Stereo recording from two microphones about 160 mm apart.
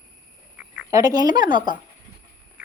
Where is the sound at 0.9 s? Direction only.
20° right (ahead or behind).